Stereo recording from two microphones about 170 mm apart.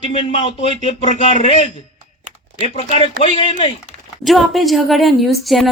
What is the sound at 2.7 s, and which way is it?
A man's voice, 40° left (ahead or behind).